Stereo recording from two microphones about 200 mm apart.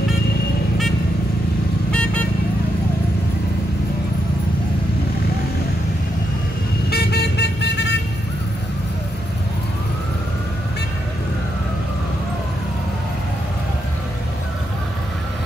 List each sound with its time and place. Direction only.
1.9 s vehicle: 5° left (ahead or behind)
6.9 s vehicle: 55° left (ahead or behind)